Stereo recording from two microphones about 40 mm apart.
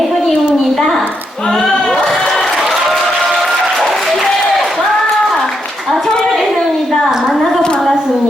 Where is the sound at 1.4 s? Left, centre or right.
Centre.